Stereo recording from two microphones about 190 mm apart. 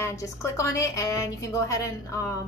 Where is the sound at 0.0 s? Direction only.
15° left (ahead or behind).